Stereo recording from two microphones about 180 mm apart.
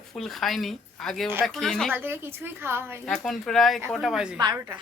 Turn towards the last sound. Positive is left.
turn(degrees=-20)  # may be behind; listen again after turning